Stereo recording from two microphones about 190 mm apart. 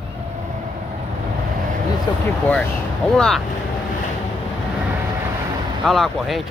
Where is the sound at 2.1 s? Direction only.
20° left (ahead or behind).